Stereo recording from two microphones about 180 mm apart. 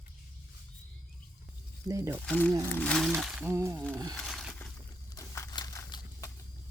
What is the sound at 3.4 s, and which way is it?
Speech, 15° right (ahead or behind).